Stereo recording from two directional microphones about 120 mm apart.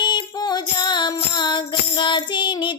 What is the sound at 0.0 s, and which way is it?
Music, 40° left (ahead or behind).